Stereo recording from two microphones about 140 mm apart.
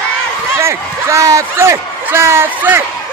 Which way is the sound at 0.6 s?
20° right (ahead or behind).